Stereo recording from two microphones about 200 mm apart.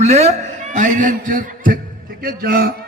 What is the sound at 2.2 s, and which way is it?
Speech, 45° right (ahead or behind).